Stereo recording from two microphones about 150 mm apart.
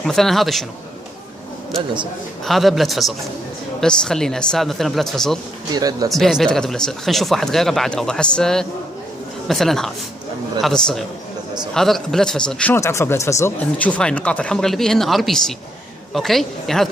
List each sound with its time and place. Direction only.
0.0 s a man's voice: centre (ahead or behind)
2.4 s a man's voice: centre (ahead or behind)
5.7 s speech: 25° right (ahead or behind)
6.1 s a man's voice: centre (ahead or behind)